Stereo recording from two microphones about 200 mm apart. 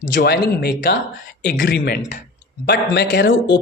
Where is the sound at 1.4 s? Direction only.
65° left (ahead or behind).